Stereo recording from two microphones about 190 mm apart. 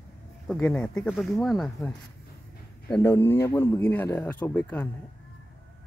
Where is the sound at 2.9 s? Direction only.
10° left (ahead or behind).